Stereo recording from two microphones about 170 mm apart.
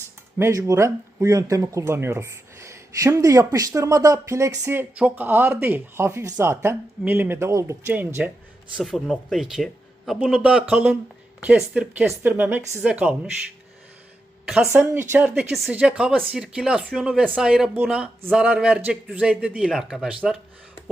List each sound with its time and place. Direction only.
0.3 s speech: 15° right (ahead or behind)
8.7 s speech: centre (ahead or behind)
14.4 s a woman's voice: 5° right (ahead or behind)
14.7 s speech: 15° right (ahead or behind)